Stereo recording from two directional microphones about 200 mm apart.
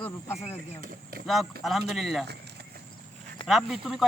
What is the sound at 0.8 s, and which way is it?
Speech, 45° right (ahead or behind).